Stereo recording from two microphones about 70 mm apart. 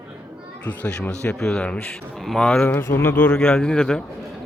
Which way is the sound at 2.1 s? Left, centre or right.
Centre.